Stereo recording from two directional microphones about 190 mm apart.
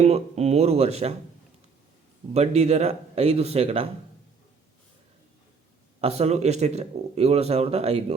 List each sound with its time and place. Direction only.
0.0 s speech: 35° right (ahead or behind)
2.3 s speech: 35° right (ahead or behind)
6.0 s speech: 35° right (ahead or behind)